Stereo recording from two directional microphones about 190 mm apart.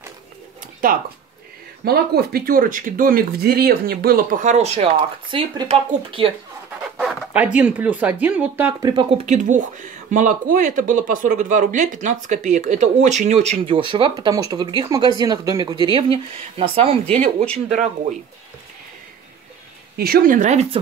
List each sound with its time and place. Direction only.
0.8 s speech: 50° right (ahead or behind); by 6.3 s 30° right (ahead or behind)
7.0 s speech: 5° right (ahead or behind)
8.9 s speech: 35° right (ahead or behind)
20.0 s speech: 50° right (ahead or behind)